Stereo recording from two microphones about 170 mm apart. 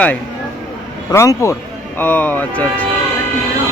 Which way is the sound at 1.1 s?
15° left (ahead or behind).